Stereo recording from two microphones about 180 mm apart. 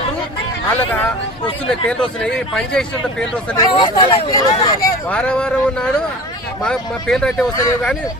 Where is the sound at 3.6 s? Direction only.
25° left (ahead or behind).